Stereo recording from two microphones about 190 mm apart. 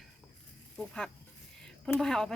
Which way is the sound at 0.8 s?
5° left (ahead or behind).